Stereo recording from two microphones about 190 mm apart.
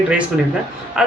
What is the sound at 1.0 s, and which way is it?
Speech, 5° right (ahead or behind).